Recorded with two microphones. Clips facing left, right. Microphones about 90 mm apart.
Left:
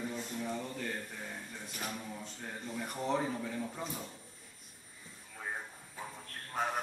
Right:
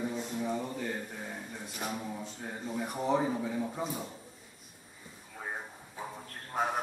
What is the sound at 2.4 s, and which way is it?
A man's voice, 10° right (ahead or behind).